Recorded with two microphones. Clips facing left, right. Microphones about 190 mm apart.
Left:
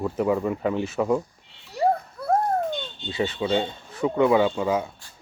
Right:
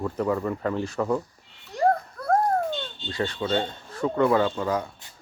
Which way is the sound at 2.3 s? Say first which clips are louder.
Even; 15° left (ahead or behind).